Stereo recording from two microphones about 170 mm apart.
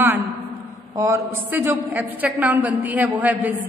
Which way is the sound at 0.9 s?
15° right (ahead or behind).